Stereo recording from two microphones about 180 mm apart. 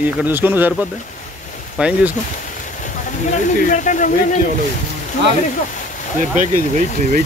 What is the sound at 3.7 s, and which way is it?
Speech, 45° left (ahead or behind).